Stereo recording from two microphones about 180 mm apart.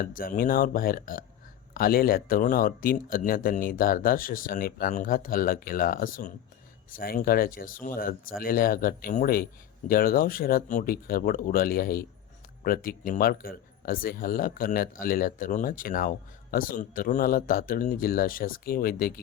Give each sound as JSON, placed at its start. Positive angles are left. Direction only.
{"t": 0.0, "sound": "speech", "side_deg": 50}